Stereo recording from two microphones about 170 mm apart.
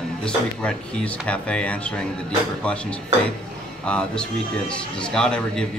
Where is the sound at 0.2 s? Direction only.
5° left (ahead or behind).